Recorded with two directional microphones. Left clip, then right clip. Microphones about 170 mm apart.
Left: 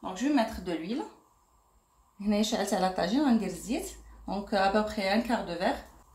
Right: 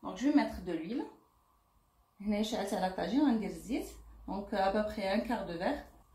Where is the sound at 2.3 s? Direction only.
50° left (ahead or behind).